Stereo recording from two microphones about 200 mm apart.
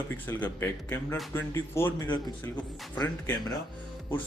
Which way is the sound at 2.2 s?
5° left (ahead or behind).